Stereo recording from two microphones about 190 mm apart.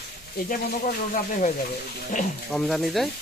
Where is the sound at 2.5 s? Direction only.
Centre (ahead or behind).